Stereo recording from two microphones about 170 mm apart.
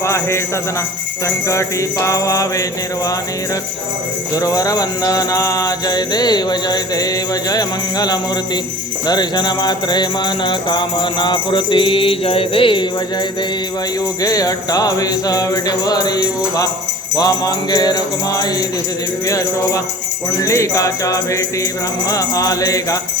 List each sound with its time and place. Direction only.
0.0 s jingle bell: 15° left (ahead or behind)
1.5 s music: 20° left (ahead or behind)
4.4 s music: 20° left (ahead or behind)
14.2 s music: 20° left (ahead or behind)